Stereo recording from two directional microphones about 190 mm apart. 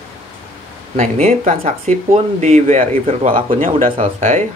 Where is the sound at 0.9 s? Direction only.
35° right (ahead or behind).